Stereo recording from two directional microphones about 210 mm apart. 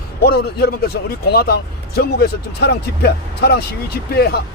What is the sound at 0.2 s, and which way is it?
A man's voice, 50° left (ahead or behind).